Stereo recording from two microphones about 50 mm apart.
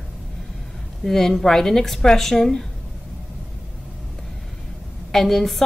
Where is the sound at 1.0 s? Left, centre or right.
Centre.